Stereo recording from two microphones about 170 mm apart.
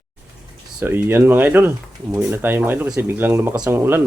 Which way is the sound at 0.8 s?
10° right (ahead or behind).